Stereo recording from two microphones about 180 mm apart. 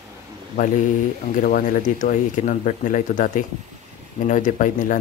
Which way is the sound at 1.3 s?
45° left (ahead or behind).